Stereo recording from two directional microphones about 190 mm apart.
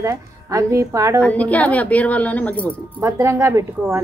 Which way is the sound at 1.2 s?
5° left (ahead or behind).